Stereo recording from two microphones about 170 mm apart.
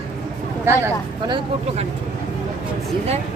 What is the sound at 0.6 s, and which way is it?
Speech, 15° right (ahead or behind).